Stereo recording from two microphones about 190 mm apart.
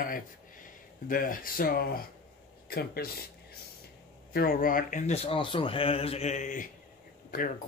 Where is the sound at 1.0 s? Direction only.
45° left (ahead or behind).